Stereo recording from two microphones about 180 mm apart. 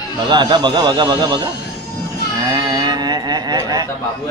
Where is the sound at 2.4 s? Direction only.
20° right (ahead or behind).